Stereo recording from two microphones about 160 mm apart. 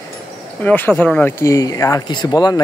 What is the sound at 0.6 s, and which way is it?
Speech, 10° left (ahead or behind).